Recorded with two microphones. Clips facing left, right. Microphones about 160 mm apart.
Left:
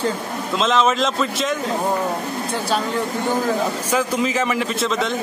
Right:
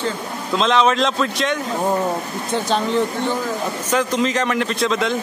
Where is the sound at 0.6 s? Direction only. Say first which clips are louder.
Right 2 dB; centre (ahead or behind).